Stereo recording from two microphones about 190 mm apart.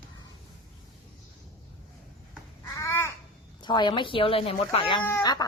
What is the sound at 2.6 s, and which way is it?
Babbling, 15° left (ahead or behind).